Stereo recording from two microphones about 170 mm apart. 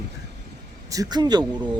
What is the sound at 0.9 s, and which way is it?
Speech, 20° right (ahead or behind).